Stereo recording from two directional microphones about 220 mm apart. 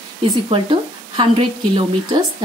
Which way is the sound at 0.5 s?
25° right (ahead or behind).